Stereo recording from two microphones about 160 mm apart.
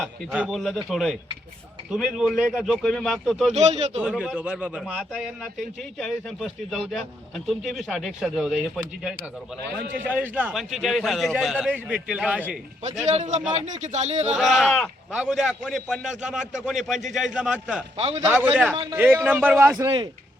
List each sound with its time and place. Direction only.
0.0 s a man's voice: 5° right (ahead or behind)
3.5 s speech: 45° right (ahead or behind)
4.0 s a man's voice: centre (ahead or behind)
12.8 s speech: 45° right (ahead or behind)
14.3 s a man's voice: centre (ahead or behind)
17.9 s a man's voice: 40° right (ahead or behind)
18.3 s a man's voice: 15° right (ahead or behind)